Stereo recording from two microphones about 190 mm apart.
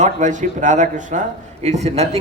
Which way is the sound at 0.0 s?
40° right (ahead or behind).